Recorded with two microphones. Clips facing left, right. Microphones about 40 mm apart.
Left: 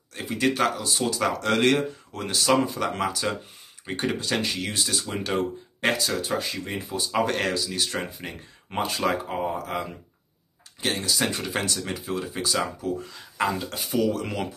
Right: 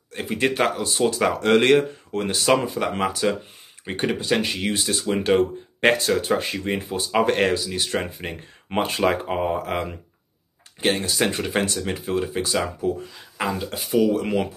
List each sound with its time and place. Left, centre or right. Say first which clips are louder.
0.1 s speech: right 2 dB; right
13.0 s speech: left 1 dB; centre